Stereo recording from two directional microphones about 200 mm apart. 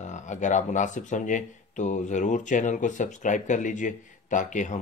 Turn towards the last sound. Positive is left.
turn(degrees=40)  # may be behind; listen again after turning